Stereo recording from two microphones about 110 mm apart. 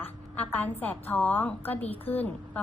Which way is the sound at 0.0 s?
15° left (ahead or behind).